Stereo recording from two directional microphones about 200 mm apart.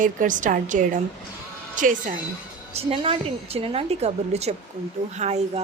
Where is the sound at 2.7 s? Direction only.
30° right (ahead or behind).